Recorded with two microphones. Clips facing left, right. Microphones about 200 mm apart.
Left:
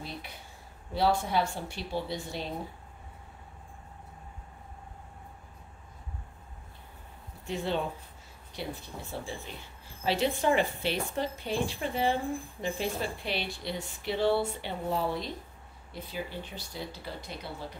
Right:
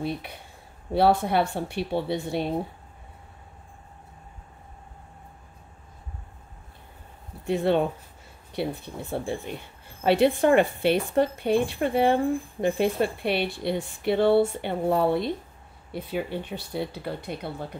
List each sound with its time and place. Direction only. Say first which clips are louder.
0.9 s speech: right 6 dB; 60° right (ahead or behind)
7.4 s speech: right 9 dB; 60° right (ahead or behind)